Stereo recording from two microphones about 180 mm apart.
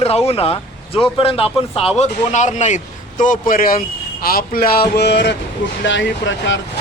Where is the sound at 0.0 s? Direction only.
35° left (ahead or behind); by 5.4 s 70° left (ahead or behind).